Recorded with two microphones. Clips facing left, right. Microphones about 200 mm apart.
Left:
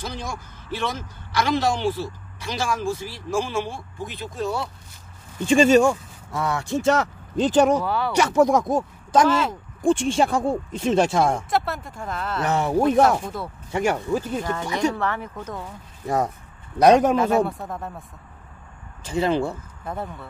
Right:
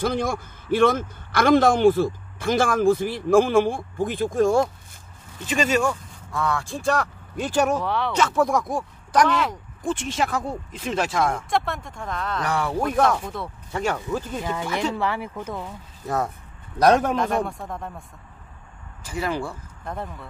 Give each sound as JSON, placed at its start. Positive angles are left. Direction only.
{"t": 0.0, "sound": "a man's voice", "side_deg": -55}
{"t": 5.8, "sound": "speech", "side_deg": 25}
{"t": 7.8, "sound": "a man's voice", "side_deg": 5}
{"t": 8.2, "sound": "speech", "side_deg": 20}
{"t": 11.5, "sound": "a man's voice", "side_deg": 5}
{"t": 12.4, "sound": "speech", "side_deg": 25}
{"t": 13.2, "sound": "a man's voice", "side_deg": 0}
{"t": 13.7, "sound": "speech", "side_deg": 15}
{"t": 14.4, "sound": "speech", "side_deg": -10}
{"t": 16.8, "sound": "a man's voice", "side_deg": 15}
{"t": 19.0, "sound": "speech", "side_deg": 25}
{"t": 19.8, "sound": "a man's voice", "side_deg": 5}